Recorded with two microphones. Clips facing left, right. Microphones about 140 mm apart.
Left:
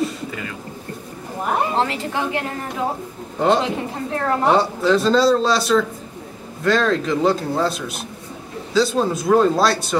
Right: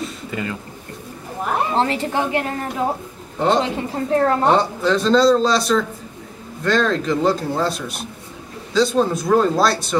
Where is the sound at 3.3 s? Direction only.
Centre (ahead or behind).